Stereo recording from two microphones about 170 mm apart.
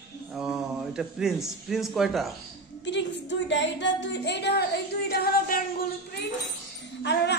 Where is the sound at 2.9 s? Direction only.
90° left.